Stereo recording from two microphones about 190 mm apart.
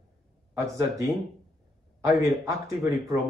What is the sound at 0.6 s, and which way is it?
Speech, 15° right (ahead or behind).